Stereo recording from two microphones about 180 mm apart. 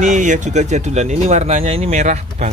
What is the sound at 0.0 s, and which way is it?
Speech, 45° right (ahead or behind).